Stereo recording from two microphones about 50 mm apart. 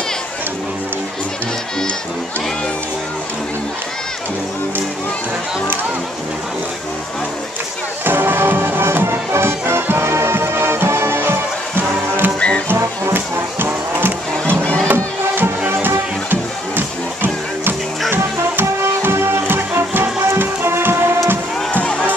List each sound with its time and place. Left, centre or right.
8.0 s music: right
12.4 s music: left
12.6 s music: right